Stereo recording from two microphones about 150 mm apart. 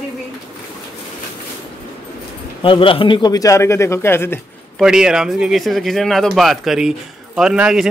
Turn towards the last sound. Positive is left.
turn(degrees=-5)  # may be behind; listen again after turning